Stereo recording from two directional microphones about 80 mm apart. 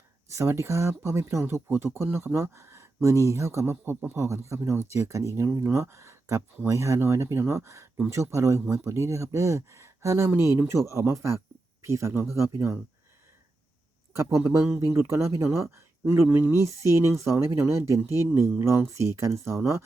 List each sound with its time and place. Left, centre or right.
0.3 s speech: right
14.2 s speech: right